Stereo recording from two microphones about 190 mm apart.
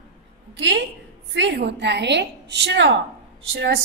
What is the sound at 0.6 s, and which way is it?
A woman's voice, 70° right (ahead or behind).